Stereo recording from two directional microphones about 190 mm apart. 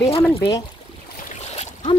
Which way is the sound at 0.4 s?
20° left (ahead or behind).